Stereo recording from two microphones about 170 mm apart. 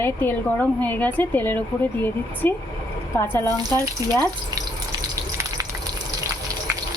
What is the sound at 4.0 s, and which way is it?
Speech, 20° right (ahead or behind).